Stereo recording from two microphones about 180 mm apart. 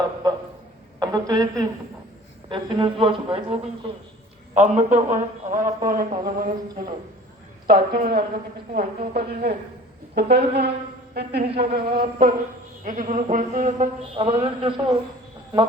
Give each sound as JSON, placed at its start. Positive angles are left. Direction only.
{"t": 0.9, "sound": "a woman's voice", "side_deg": -20}
{"t": 10.2, "sound": "a man's voice", "side_deg": -65}
{"t": 12.8, "sound": "a man's voice", "side_deg": -45}
{"t": 14.2, "sound": "a man's voice", "side_deg": -30}